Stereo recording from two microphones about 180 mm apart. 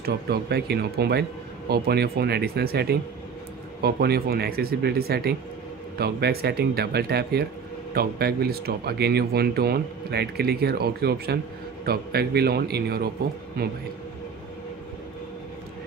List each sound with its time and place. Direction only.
0.0 s speech: 60° right (ahead or behind)